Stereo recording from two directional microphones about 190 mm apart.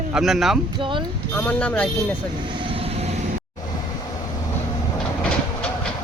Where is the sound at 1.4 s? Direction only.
10° left (ahead or behind).